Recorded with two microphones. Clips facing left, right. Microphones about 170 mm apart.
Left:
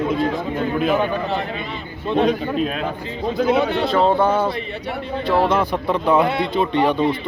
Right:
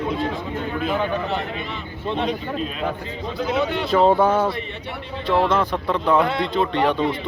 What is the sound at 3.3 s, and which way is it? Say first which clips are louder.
Speech: left 5 dB; 55° left (ahead or behind).